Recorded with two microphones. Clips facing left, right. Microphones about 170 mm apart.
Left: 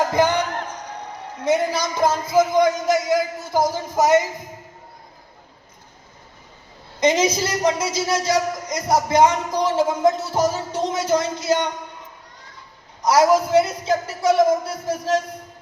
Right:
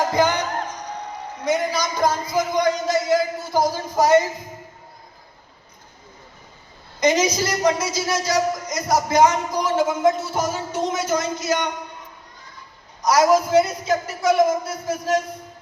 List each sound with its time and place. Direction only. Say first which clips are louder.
1.5 s a man's voice: left 2 dB; 25° left (ahead or behind)
7.0 s a man's voice: left 1 dB; 25° left (ahead or behind)
13.0 s a man's voice: left 1 dB; 30° left (ahead or behind)